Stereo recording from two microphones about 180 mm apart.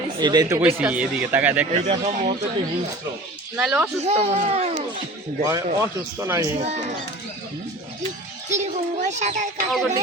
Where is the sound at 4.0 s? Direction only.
35° right (ahead or behind).